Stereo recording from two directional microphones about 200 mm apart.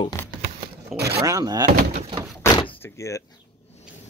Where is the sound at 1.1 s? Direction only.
15° right (ahead or behind).